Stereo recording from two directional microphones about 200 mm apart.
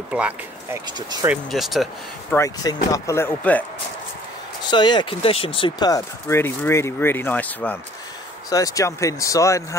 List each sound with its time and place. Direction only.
0.9 s speech: 20° right (ahead or behind)
1.3 s speech: centre (ahead or behind)
2.3 s speech: 15° left (ahead or behind)
4.6 s speech: 25° left (ahead or behind)